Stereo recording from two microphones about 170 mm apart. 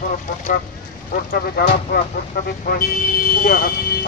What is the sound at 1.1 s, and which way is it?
Speech, 60° left (ahead or behind).